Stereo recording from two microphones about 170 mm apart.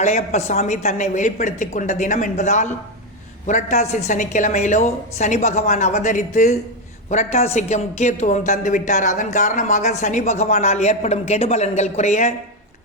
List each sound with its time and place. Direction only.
0.0 s a woman's voice: 40° left (ahead or behind)